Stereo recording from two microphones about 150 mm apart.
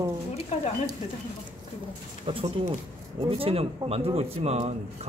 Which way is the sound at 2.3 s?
35° right (ahead or behind).